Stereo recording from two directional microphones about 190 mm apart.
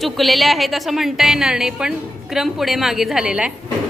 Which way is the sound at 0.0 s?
Centre (ahead or behind).